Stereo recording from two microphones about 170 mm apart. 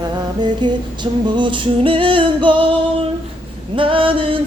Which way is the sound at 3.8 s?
30° right (ahead or behind).